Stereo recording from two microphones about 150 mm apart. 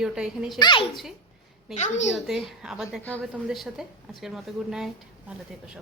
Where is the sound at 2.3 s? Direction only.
5° right (ahead or behind).